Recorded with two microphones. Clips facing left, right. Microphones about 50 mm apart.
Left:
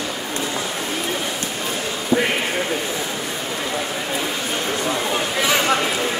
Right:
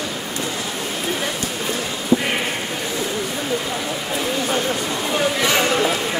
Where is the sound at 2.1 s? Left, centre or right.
Left.